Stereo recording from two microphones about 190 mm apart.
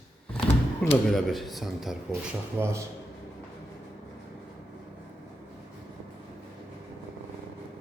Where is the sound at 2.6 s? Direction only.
15° right (ahead or behind).